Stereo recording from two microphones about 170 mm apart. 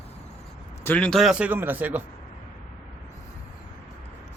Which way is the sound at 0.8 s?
10° left (ahead or behind).